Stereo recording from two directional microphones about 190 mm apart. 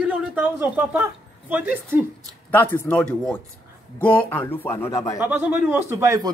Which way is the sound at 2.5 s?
10° left (ahead or behind).